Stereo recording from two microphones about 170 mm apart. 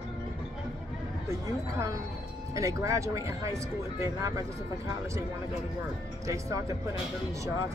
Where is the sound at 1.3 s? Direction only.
20° right (ahead or behind).